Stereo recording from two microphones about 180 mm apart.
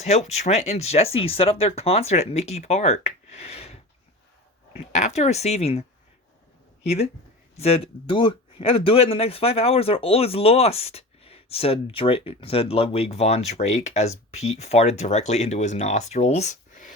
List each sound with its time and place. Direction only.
0.0 s speech: 40° left (ahead or behind)
4.8 s speech: 40° left (ahead or behind)
6.8 s speech: 35° left (ahead or behind)